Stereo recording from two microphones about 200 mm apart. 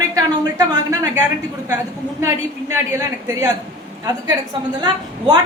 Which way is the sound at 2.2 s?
15° right (ahead or behind).